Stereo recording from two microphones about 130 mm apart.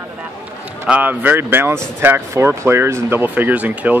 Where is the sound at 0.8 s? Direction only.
10° right (ahead or behind).